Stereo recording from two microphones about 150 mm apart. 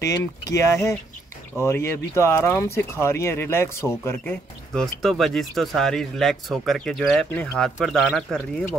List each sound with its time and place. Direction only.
0.7 s speech: 20° left (ahead or behind); by 8.6 s centre (ahead or behind)